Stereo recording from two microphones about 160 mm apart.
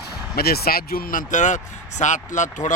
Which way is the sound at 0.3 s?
75° left (ahead or behind).